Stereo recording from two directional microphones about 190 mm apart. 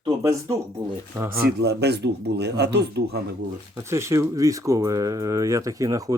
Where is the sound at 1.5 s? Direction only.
60° right (ahead or behind).